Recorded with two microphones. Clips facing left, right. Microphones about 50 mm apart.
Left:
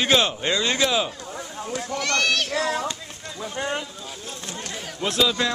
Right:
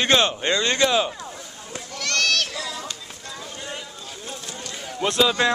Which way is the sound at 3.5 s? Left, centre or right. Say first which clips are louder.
Left 10 dB; left.